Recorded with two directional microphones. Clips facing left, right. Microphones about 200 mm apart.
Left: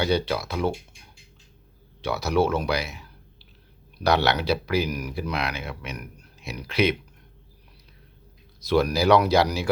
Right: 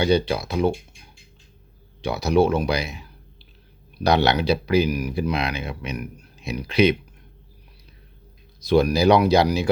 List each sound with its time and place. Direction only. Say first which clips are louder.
0.0 s speech: right 4 dB; 15° right (ahead or behind)
2.0 s speech: right 4 dB; 15° right (ahead or behind)
8.6 s speech: right 4 dB; 20° right (ahead or behind)